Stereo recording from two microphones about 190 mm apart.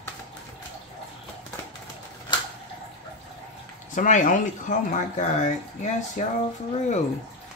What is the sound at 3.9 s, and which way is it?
Speech, 40° left (ahead or behind).